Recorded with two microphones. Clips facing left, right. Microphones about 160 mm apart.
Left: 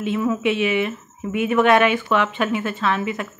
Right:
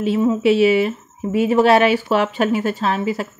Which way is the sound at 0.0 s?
35° right (ahead or behind).